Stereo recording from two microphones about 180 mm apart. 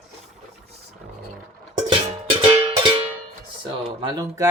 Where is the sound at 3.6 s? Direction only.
25° right (ahead or behind).